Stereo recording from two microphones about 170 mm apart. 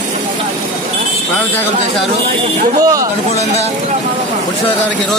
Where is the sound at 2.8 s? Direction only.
20° right (ahead or behind).